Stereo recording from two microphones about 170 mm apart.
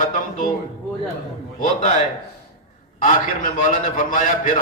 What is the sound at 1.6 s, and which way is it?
Speech, 50° left (ahead or behind).